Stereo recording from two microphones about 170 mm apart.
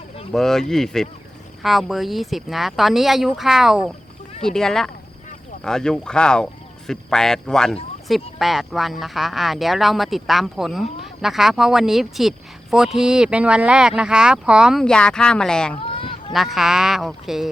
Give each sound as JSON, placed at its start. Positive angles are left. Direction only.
{"t": 0.3, "sound": "speech", "side_deg": 5}
{"t": 15.9, "sound": "a sound", "side_deg": 30}
{"t": 16.3, "sound": "speech", "side_deg": 0}